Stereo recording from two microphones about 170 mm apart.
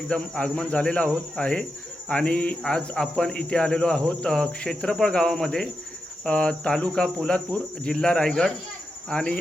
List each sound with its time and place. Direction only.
0.1 s speech: 5° left (ahead or behind)
2.0 s cricket: 5° left (ahead or behind)